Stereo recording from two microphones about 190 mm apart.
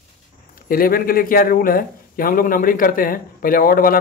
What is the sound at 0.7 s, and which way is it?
A man's voice, 50° left (ahead or behind).